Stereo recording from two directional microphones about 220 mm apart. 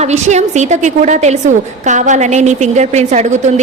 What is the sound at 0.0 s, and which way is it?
A woman's voice, 30° right (ahead or behind).